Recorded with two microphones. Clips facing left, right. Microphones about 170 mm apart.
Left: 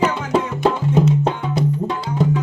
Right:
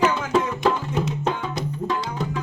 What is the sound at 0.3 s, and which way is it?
Music, 30° left (ahead or behind).